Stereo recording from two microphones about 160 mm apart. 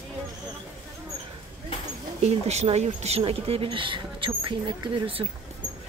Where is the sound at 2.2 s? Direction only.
45° right (ahead or behind).